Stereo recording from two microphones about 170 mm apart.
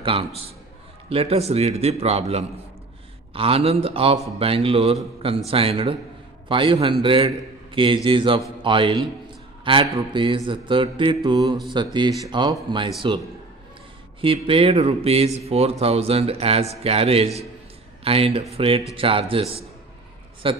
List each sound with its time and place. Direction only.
0.0 s a man's voice: 30° right (ahead or behind)
14.2 s a man's voice: 30° right (ahead or behind)